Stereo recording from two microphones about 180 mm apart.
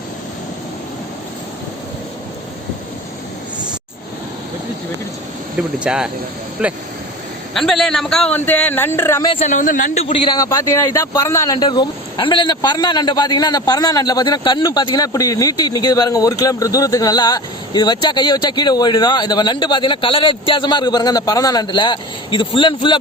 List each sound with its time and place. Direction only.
5.5 s a man's voice: 5° right (ahead or behind); by 9.3 s 15° left (ahead or behind)
9.5 s a man's voice: 45° left (ahead or behind)
10.1 s a man's voice: 30° left (ahead or behind)